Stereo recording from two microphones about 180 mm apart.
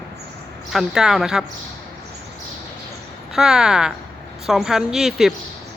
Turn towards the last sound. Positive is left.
turn(degrees=0)  # may be behind; listen again after turning